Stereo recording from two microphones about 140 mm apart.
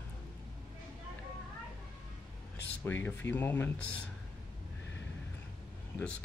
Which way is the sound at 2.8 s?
15° left (ahead or behind).